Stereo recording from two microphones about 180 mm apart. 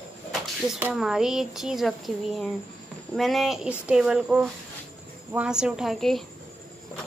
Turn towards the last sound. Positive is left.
turn(degrees=0)  # may be behind; listen again after turning